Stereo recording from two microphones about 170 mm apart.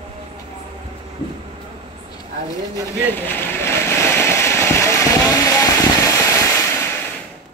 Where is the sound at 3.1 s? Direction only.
10° left (ahead or behind).